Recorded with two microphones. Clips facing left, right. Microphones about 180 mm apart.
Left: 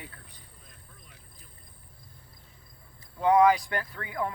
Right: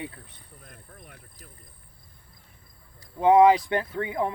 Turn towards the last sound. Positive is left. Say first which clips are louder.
# right 6 dB
turn(degrees=-25)  # may be behind; listen again after turning